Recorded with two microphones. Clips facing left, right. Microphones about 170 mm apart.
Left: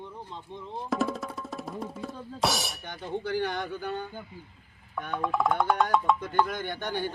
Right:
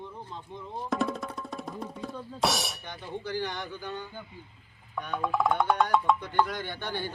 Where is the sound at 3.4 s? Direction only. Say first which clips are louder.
Left 4 dB; 55° left (ahead or behind).